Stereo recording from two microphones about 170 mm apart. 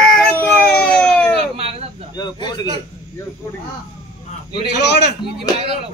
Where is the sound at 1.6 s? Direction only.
35° right (ahead or behind).